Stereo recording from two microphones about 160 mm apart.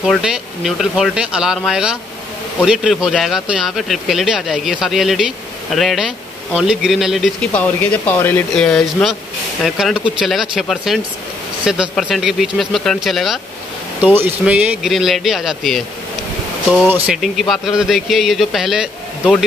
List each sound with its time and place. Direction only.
0.0 s speech: 5° right (ahead or behind)
7.5 s speech: 10° left (ahead or behind)
16.8 s speech: 10° right (ahead or behind)